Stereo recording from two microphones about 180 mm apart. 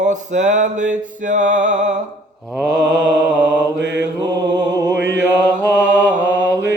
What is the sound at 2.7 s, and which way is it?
Mantra, 70° right (ahead or behind).